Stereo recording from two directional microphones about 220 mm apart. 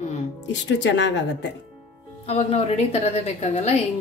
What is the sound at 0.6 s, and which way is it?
Speech, 55° left (ahead or behind).